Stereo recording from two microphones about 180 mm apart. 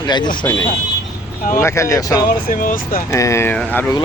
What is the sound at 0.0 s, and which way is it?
Speech, 25° left (ahead or behind).